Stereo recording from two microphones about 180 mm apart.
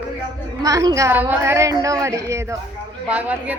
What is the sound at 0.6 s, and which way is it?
A woman's voice, 20° right (ahead or behind).